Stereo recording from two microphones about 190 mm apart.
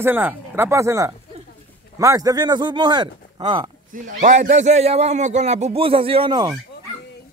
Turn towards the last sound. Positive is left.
turn(degrees=-20)  # may be behind; listen again after turning